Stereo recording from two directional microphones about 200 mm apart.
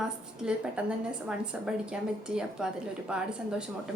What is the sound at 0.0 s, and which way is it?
A woman's voice, 5° right (ahead or behind).